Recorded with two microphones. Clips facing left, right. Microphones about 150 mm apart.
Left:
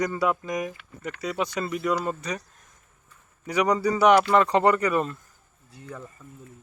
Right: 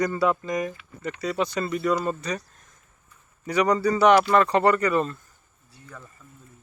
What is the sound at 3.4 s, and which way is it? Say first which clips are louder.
Speech: right 1 dB; 15° left (ahead or behind).